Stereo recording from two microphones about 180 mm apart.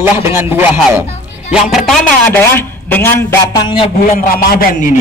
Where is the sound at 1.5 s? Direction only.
Centre (ahead or behind).